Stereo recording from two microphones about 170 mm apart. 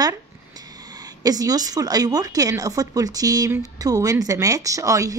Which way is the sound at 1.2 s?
20° right (ahead or behind).